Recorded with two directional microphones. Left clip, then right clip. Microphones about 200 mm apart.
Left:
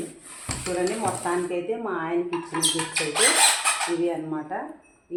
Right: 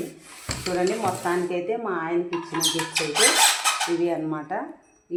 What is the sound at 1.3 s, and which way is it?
Speech, 40° right (ahead or behind).